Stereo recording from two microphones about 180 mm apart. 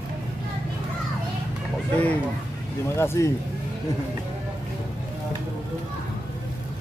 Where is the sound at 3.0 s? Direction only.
15° left (ahead or behind).